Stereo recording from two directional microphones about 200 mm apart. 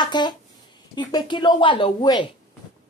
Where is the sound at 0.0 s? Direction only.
20° left (ahead or behind).